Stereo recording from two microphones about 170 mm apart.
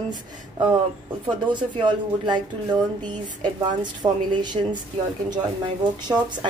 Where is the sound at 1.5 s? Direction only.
25° right (ahead or behind).